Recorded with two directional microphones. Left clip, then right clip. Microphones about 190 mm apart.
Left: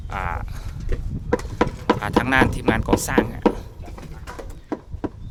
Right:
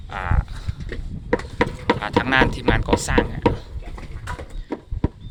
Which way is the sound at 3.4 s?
20° left (ahead or behind).